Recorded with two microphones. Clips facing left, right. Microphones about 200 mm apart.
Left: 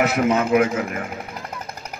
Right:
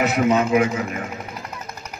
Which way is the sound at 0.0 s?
55° left (ahead or behind).